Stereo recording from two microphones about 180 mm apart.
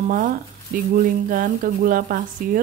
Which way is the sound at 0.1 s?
50° right (ahead or behind).